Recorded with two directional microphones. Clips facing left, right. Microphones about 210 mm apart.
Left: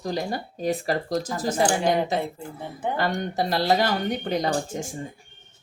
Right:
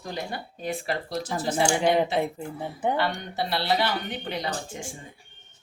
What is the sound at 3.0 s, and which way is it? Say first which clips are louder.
Speech: left 3 dB; 45° left (ahead or behind).